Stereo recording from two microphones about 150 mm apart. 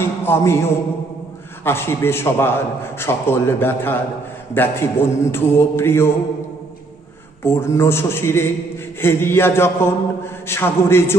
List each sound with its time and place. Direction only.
0.0 s a man's voice: 15° left (ahead or behind)
7.4 s a man's voice: 15° left (ahead or behind)